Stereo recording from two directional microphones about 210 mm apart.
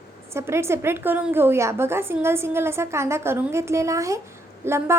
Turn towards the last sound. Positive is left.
turn(degrees=-10)  # may be behind; listen again after turning